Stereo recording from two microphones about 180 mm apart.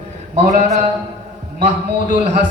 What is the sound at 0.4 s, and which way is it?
Speech, 40° right (ahead or behind).